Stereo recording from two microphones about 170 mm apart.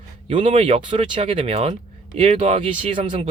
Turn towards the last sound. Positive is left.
turn(degrees=-30)  # may be behind; listen again after turning